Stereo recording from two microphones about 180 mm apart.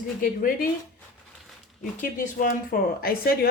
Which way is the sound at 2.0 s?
50° left (ahead or behind).